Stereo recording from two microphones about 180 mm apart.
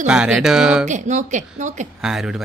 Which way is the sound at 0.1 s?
5° right (ahead or behind).